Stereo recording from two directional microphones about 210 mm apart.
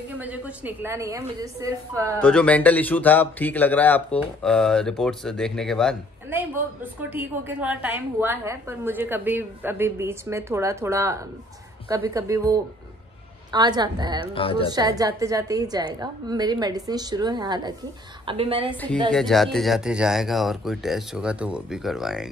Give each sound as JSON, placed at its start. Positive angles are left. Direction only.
{"t": 0.2, "sound": "a woman's voice", "side_deg": -10}
{"t": 2.2, "sound": "speech", "side_deg": 5}
{"t": 6.3, "sound": "a woman's voice", "side_deg": -10}
{"t": 14.3, "sound": "a woman's voice", "side_deg": 25}
{"t": 14.7, "sound": "a woman's voice", "side_deg": -20}
{"t": 19.1, "sound": "speech", "side_deg": 0}